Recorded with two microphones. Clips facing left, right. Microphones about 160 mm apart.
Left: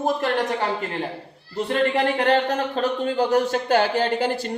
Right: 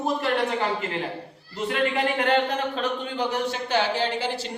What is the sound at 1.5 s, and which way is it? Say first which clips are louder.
Speech: left 4 dB; 35° left (ahead or behind).